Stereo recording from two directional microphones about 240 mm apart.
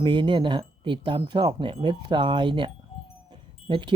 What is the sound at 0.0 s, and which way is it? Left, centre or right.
Speech, centre.